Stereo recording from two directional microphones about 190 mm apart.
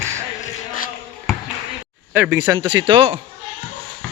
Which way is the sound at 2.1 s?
10° right (ahead or behind).